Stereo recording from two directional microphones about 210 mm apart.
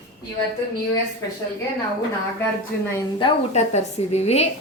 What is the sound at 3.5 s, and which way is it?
Speech, 30° left (ahead or behind).